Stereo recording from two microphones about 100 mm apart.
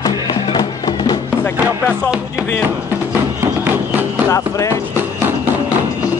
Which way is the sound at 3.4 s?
20° right (ahead or behind).